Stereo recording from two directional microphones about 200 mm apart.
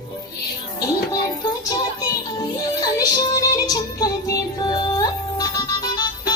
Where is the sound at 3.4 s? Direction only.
20° left (ahead or behind).